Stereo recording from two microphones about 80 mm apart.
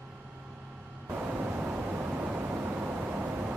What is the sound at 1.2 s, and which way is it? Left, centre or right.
Vehicle, centre.